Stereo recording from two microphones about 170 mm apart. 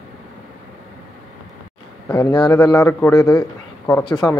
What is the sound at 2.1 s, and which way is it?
A man's voice, 20° left (ahead or behind).